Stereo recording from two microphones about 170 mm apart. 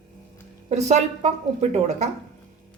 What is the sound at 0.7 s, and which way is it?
A woman's voice, 40° right (ahead or behind).